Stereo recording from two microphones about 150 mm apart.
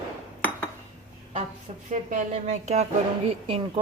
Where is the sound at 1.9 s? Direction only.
55° right (ahead or behind).